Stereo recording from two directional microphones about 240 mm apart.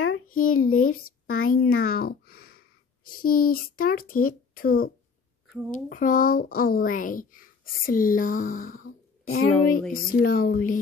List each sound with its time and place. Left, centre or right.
0.0 s a sound: left
0.5 s speech: left
0.7 s speech: left
1.3 s speech: left
2.0 s speech: left
9.2 s speech: left
9.5 s a sound: centre
9.9 s speech: left